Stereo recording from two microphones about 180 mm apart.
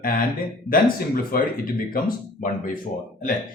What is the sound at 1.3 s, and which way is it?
Speech, 55° left (ahead or behind).